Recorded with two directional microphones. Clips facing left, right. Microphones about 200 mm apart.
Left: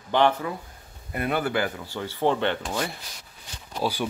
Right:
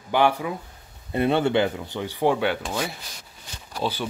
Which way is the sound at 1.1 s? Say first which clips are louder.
Right 5 dB; 25° right (ahead or behind).